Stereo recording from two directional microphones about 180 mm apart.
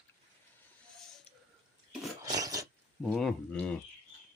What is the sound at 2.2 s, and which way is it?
Filing, 20° right (ahead or behind).